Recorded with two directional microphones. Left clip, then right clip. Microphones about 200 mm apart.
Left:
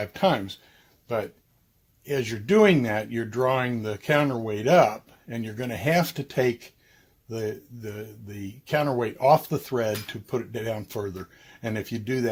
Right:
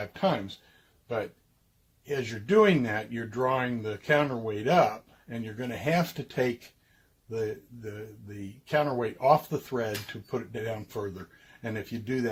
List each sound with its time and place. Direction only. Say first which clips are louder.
0.0 s speech: left 5 dB; 45° left (ahead or behind)
2.0 s speech: left 4 dB; 40° left (ahead or behind)